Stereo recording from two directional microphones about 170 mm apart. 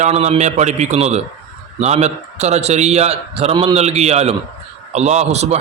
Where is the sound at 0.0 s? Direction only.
40° right (ahead or behind).